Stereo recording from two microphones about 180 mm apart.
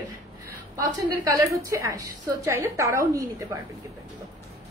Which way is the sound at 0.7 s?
20° right (ahead or behind).